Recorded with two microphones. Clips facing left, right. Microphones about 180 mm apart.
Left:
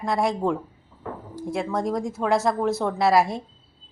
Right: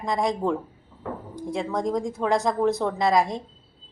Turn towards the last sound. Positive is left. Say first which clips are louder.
# left 2 dB
turn(degrees=5)  # may be behind; listen again after turning